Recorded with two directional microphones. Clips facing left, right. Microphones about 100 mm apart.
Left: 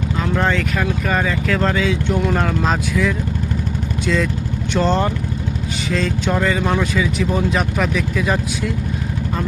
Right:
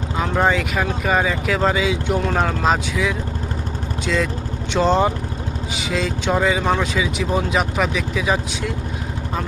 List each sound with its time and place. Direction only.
0.2 s speech: 10° right (ahead or behind)